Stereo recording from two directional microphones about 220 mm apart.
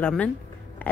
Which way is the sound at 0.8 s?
10° left (ahead or behind).